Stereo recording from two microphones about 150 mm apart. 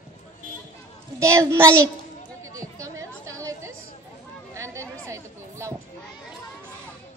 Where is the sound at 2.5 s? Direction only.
20° right (ahead or behind).